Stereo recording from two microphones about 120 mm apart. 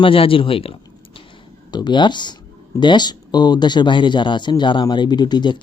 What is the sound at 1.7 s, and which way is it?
Speech, 40° left (ahead or behind).